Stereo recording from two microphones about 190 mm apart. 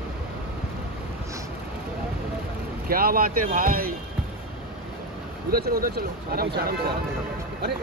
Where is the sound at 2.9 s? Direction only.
50° right (ahead or behind).